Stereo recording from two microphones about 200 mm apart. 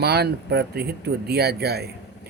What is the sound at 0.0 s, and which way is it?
Speech, 55° right (ahead or behind).